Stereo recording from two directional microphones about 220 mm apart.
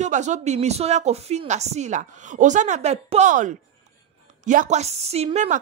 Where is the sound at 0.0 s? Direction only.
35° right (ahead or behind).